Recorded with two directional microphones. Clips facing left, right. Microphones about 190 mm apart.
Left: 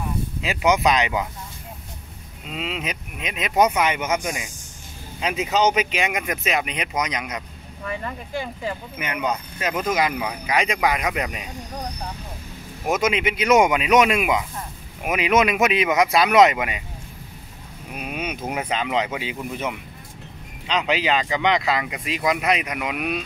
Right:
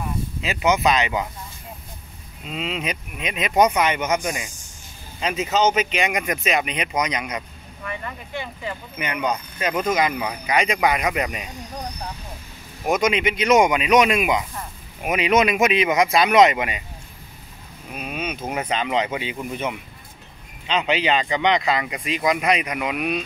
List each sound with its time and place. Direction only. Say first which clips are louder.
0.4 s speech: even; 10° left (ahead or behind)
2.4 s speech: right 2 dB; 5° left (ahead or behind)
7.8 s speech: left 2 dB; 35° left (ahead or behind)
8.9 s speech: right 3 dB; 5° left (ahead or behind)
12.8 s speech: right 1 dB; 5° left (ahead or behind)
17.9 s speech: even; 15° left (ahead or behind)